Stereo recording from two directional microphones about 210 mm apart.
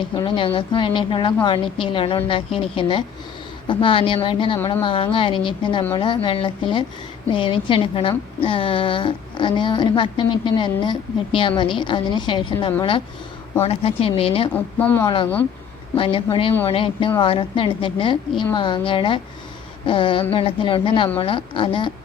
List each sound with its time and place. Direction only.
0.0 s a woman's voice: 20° left (ahead or behind)
14.5 s speech: 10° left (ahead or behind)
15.0 s a woman's voice: 25° left (ahead or behind)